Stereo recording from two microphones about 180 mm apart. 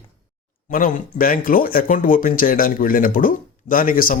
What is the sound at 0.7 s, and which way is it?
Speech, 50° left (ahead or behind).